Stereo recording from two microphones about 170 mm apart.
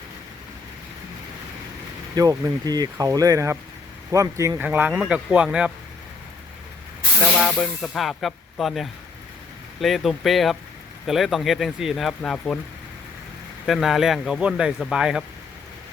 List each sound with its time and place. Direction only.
2.1 s speech: 20° right (ahead or behind); by 5.7 s 5° right (ahead or behind)
7.2 s speech: 5° left (ahead or behind)
13.7 s speech: centre (ahead or behind)